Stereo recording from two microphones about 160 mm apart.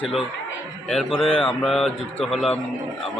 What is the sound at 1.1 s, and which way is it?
Speech, 35° left (ahead or behind).